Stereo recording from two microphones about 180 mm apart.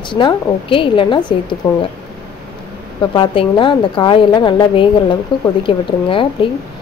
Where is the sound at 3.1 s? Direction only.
25° left (ahead or behind).